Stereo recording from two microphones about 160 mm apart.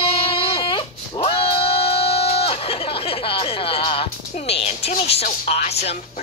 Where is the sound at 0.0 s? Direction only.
35° left (ahead or behind).